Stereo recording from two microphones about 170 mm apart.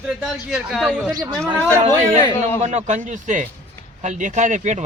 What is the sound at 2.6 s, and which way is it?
Speech, 45° right (ahead or behind).